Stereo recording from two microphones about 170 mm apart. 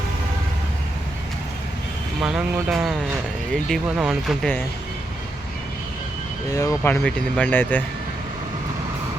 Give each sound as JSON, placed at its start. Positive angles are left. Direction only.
{"t": 2.2, "sound": "speech", "side_deg": -5}
{"t": 6.5, "sound": "speech", "side_deg": 20}